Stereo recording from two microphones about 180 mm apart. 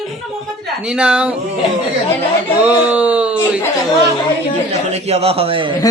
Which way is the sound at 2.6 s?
5° right (ahead or behind).